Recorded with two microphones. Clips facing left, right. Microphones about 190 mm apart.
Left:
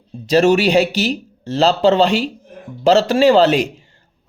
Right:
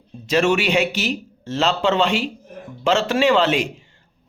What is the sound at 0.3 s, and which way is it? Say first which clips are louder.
Speech: left 5 dB; 35° left (ahead or behind).